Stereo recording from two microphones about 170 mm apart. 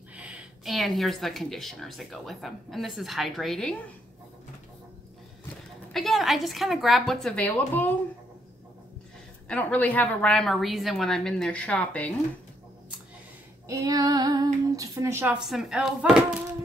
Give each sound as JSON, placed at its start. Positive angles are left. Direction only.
{"t": 0.1, "sound": "speech", "side_deg": -5}
{"t": 5.9, "sound": "speech", "side_deg": 0}
{"t": 9.5, "sound": "speech", "side_deg": 10}
{"t": 13.7, "sound": "speech", "side_deg": -20}